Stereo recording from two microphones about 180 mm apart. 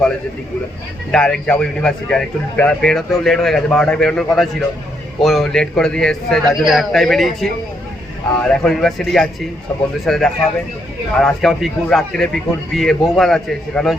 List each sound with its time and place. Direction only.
1.1 s a man's voice: 5° left (ahead or behind)